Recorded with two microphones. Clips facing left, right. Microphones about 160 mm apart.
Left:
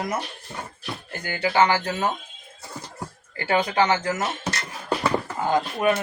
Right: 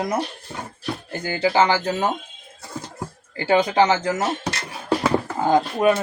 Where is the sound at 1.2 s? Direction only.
30° right (ahead or behind).